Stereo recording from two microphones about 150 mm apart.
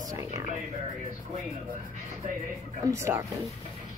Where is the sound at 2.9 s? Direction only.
20° right (ahead or behind).